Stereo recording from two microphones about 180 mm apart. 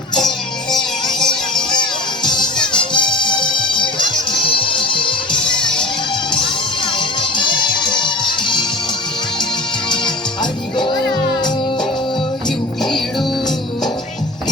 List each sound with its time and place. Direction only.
0.1 s music: 25° left (ahead or behind)
1.2 s music: 5° left (ahead or behind)
1.7 s music: 25° left (ahead or behind)
5.4 s music: 5° left (ahead or behind)
6.9 s music: 25° left (ahead or behind)
9.9 s music: 25° left (ahead or behind)